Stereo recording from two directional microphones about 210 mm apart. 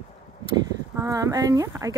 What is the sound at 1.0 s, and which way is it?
Speech, 15° right (ahead or behind).